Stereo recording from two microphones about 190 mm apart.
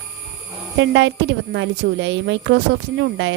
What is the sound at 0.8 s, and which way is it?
A woman's voice, 75° right (ahead or behind).